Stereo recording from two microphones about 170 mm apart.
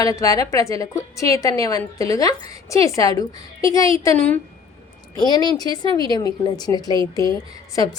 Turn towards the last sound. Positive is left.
turn(degrees=20)  # may be behind; listen again after turning